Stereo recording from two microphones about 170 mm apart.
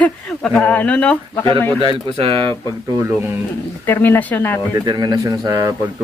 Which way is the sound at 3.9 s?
10° left (ahead or behind).